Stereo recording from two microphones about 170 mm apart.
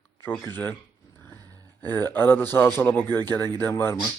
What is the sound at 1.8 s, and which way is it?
A man's voice, 10° left (ahead or behind).